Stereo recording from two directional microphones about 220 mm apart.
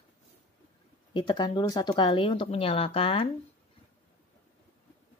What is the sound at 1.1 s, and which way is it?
Speech, 20° left (ahead or behind).